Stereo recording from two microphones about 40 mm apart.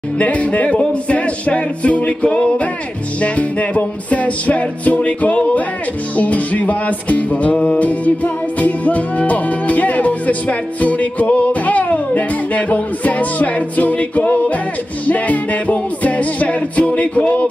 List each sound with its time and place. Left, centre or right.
0.2 s music: left